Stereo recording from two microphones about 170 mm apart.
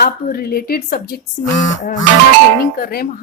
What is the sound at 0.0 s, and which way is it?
A woman's voice, 60° left (ahead or behind).